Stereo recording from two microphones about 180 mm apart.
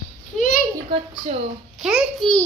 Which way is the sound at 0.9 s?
30° right (ahead or behind).